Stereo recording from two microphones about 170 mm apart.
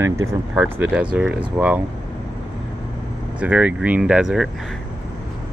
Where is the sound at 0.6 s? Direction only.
5° right (ahead or behind).